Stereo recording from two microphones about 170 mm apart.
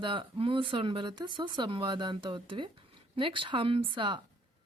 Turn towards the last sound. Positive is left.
turn(degrees=-30)  # may be behind; listen again after turning